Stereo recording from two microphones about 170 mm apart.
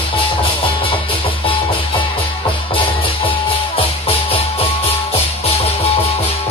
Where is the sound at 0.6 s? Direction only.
30° left (ahead or behind).